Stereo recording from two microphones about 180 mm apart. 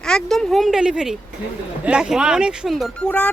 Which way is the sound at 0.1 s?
Centre (ahead or behind).